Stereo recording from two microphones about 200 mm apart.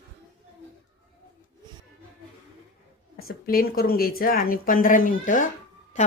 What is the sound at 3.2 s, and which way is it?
Speech, 50° left (ahead or behind).